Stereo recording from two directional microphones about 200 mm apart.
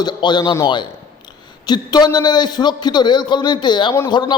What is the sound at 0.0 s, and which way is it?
A man's voice, 20° left (ahead or behind).